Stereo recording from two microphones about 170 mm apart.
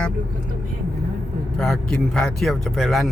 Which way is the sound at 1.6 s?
5° left (ahead or behind).